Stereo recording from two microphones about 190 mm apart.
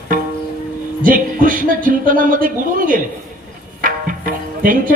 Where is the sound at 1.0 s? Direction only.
45° right (ahead or behind).